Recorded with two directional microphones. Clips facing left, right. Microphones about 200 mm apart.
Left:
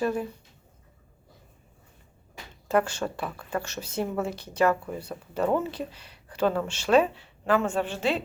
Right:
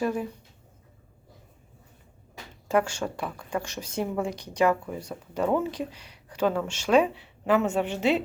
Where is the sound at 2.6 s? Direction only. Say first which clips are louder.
Even; 10° right (ahead or behind).